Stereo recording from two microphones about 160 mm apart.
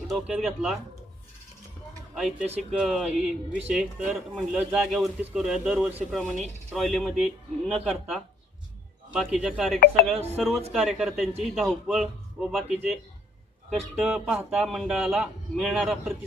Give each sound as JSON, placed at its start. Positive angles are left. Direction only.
{"t": 0.1, "sound": "speech", "side_deg": -5}
{"t": 2.1, "sound": "speech", "side_deg": -5}
{"t": 9.8, "sound": "speech", "side_deg": 75}
{"t": 10.3, "sound": "speech", "side_deg": 0}